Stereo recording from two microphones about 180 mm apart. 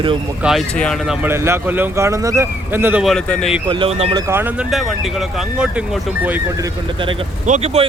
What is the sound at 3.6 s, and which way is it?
Speech, 30° right (ahead or behind).